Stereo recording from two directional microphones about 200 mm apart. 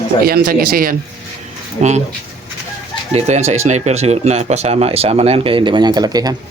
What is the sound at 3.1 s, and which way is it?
Speech, 35° right (ahead or behind).